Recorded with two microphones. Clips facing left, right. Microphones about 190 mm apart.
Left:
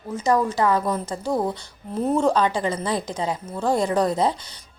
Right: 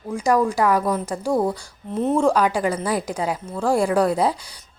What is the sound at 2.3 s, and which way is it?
A woman's voice, 10° right (ahead or behind).